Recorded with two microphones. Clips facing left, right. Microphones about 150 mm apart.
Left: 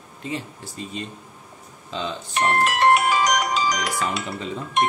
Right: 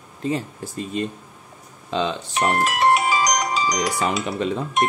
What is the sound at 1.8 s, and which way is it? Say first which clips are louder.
Speech: right 6 dB; 70° right (ahead or behind).